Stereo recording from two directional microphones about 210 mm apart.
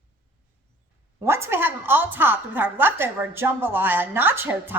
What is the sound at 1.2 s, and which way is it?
A woman's voice, 10° right (ahead or behind).